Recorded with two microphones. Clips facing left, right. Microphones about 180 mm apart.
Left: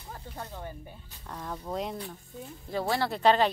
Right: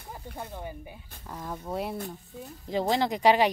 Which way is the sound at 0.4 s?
10° right (ahead or behind).